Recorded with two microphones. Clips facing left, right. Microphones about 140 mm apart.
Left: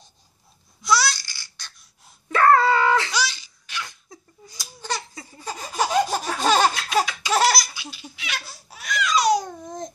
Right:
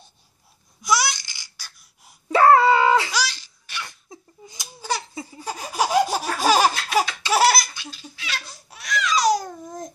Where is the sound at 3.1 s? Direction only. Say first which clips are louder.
Even; 10° right (ahead or behind).